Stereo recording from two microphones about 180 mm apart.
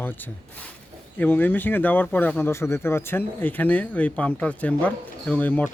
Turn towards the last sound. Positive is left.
turn(degrees=10)  # may be behind; listen again after turning